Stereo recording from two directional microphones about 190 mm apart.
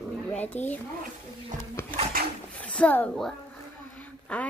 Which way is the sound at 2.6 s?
5° left (ahead or behind).